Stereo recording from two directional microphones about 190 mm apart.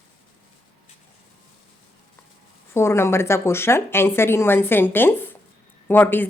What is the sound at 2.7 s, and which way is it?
Speech, 15° left (ahead or behind).